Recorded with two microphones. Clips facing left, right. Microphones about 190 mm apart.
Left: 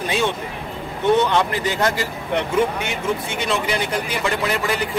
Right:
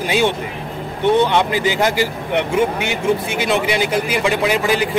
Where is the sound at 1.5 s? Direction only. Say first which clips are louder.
Right 5 dB; 90° right.